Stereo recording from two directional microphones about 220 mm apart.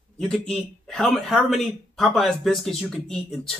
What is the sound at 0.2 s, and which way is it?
Speech, 5° left (ahead or behind).